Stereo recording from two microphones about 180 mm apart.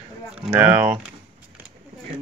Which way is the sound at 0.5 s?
10° right (ahead or behind).